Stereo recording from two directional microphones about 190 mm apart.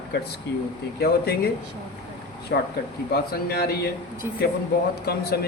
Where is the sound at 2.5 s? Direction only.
55° left (ahead or behind).